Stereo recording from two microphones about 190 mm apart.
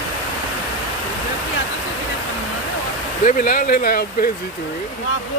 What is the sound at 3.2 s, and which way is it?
Speech, 45° left (ahead or behind).